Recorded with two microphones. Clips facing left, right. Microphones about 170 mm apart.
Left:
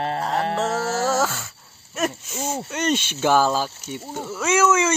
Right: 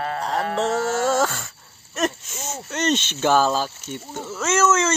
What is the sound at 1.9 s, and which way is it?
Cricket, 10° left (ahead or behind).